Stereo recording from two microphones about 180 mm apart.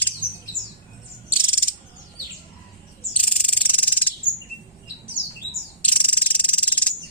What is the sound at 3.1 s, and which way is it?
Cricket, 10° left (ahead or behind).